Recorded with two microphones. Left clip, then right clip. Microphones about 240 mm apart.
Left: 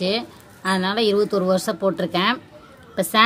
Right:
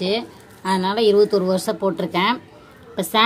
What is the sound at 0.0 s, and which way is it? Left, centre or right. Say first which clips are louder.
A woman's voice: right 1 dB; left.